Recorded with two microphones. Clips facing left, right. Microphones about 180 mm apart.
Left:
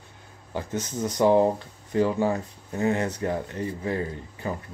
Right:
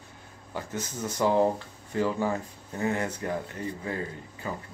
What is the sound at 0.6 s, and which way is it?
Speech, 20° left (ahead or behind).